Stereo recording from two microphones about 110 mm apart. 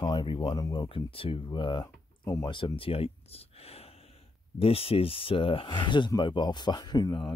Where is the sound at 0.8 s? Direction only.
55° left (ahead or behind).